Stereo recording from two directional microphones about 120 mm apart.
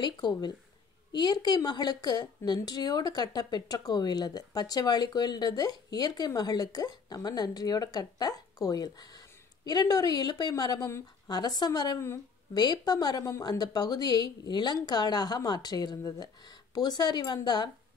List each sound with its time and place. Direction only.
0.0 s a woman's voice: 35° left (ahead or behind)